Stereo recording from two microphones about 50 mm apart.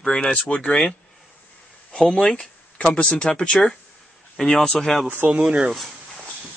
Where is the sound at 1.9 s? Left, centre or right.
Centre.